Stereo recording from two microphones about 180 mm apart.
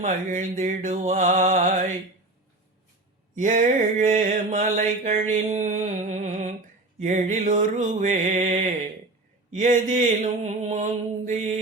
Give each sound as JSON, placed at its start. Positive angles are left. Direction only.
{"t": 0.0, "sound": "mantra", "side_deg": -45}
{"t": 3.3, "sound": "mantra", "side_deg": -45}